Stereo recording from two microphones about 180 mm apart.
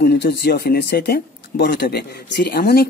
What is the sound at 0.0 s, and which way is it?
Speech, 65° left (ahead or behind).